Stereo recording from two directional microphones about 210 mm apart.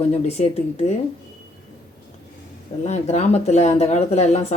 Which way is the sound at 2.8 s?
30° left (ahead or behind).